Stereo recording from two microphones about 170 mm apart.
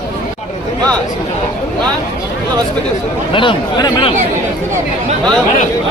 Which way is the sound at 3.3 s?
30° left (ahead or behind).